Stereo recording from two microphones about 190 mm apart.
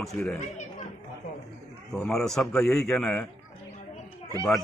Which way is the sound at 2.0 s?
Centre (ahead or behind).